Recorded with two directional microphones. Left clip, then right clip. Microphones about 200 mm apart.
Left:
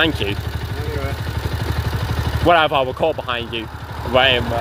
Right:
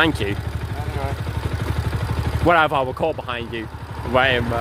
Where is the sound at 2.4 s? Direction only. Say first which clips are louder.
Left 2 dB; 10° right (ahead or behind).